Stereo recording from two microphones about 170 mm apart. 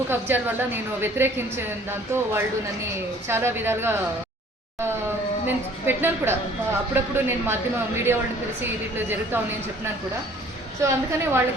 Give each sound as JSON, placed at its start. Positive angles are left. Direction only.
{"t": 0.1, "sound": "a woman's voice", "side_deg": -10}
{"t": 5.5, "sound": "a woman's voice", "side_deg": -10}
{"t": 10.8, "sound": "a woman's voice", "side_deg": -15}